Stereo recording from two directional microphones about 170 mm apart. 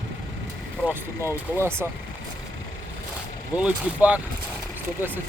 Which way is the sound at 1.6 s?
15° right (ahead or behind).